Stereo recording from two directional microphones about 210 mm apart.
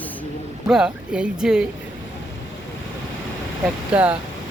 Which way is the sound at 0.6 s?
5° right (ahead or behind).